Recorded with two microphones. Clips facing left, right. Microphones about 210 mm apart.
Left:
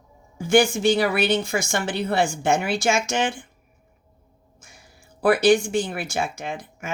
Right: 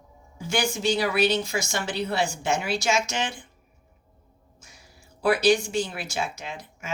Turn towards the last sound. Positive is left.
turn(degrees=55)  # may be behind; listen again after turning